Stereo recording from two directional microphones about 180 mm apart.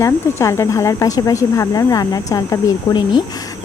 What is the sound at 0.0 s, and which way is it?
Speech, 15° left (ahead or behind).